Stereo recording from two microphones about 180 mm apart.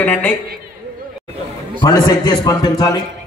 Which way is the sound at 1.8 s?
20° left (ahead or behind).